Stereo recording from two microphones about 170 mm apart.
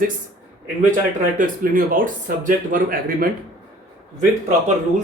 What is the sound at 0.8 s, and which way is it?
A man's voice, 50° right (ahead or behind).